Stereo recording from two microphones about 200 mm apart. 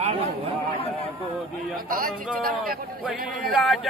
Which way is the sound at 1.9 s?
45° right (ahead or behind).